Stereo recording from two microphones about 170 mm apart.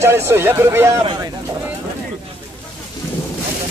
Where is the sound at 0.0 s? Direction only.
15° right (ahead or behind).